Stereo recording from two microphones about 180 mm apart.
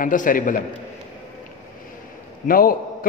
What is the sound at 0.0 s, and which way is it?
Speech, 45° left (ahead or behind).